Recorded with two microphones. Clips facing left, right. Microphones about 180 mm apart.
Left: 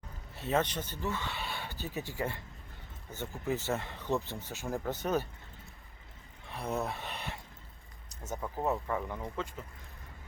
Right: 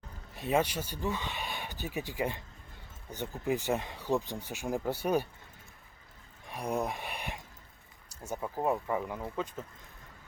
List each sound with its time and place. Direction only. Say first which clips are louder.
0.3 s speech: right 2 dB; 15° right (ahead or behind)
6.4 s a sound: right 2 dB; 15° right (ahead or behind)
8.1 s speech: right 2 dB; 10° right (ahead or behind)